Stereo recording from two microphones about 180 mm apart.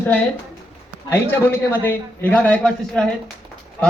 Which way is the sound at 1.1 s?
10° left (ahead or behind).